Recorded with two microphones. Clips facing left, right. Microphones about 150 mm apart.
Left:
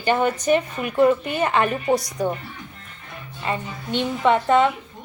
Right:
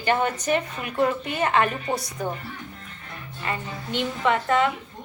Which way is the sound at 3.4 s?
20° left (ahead or behind).